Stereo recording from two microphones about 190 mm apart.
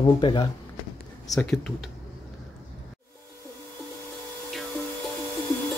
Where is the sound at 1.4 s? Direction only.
5° left (ahead or behind).